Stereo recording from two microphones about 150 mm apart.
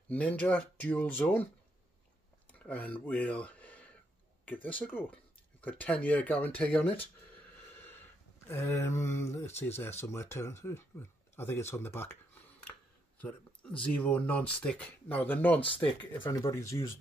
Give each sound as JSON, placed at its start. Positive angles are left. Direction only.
{"t": 0.1, "sound": "speech", "side_deg": 10}
{"t": 2.6, "sound": "speech", "side_deg": 10}
{"t": 7.8, "sound": "a sound", "side_deg": 15}
{"t": 9.8, "sound": "speech", "side_deg": 15}
{"t": 13.2, "sound": "speech", "side_deg": 10}
{"t": 16.3, "sound": "speech", "side_deg": 20}